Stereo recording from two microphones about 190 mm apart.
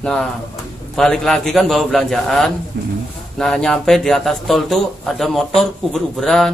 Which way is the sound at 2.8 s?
60° right (ahead or behind).